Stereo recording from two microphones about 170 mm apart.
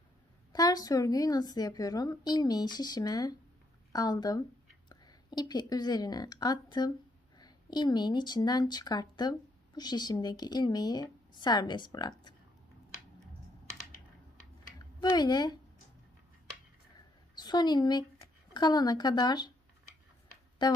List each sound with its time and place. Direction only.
0.5 s a woman's voice: 25° left (ahead or behind)
14.8 s speech: 25° left (ahead or behind)
17.4 s a woman's voice: 25° left (ahead or behind)
20.6 s a woman's voice: 25° left (ahead or behind)